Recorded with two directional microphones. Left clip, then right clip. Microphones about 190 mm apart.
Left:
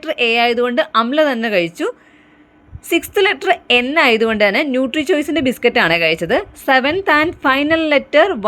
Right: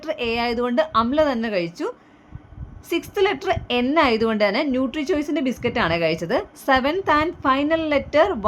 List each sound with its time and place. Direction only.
0.0 s a woman's voice: 15° left (ahead or behind)
2.9 s a woman's voice: 20° left (ahead or behind)